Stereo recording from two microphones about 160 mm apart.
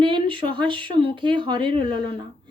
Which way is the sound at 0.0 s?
30° right (ahead or behind).